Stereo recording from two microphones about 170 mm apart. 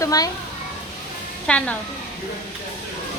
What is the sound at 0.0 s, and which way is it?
Speech, 20° left (ahead or behind).